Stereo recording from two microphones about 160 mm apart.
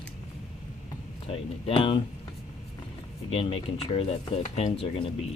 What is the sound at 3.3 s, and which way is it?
Speech, 35° left (ahead or behind).